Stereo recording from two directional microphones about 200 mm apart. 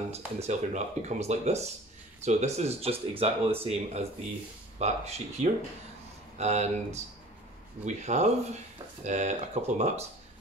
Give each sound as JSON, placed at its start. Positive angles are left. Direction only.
{"t": 0.1, "sound": "speech", "side_deg": -35}